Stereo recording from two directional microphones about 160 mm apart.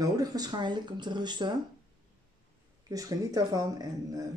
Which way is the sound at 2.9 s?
20° right (ahead or behind).